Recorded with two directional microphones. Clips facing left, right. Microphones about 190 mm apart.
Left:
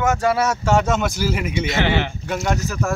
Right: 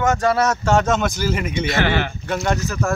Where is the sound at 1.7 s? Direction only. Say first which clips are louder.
Right 1 dB; 20° left (ahead or behind).